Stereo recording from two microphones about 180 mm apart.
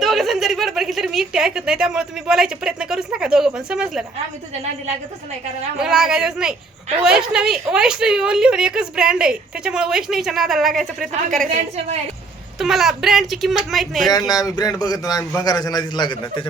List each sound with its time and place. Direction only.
0.0 s a woman's voice: centre (ahead or behind)
5.7 s a woman's voice: 5° right (ahead or behind)
12.5 s a woman's voice: centre (ahead or behind)
14.1 s speech: 20° left (ahead or behind)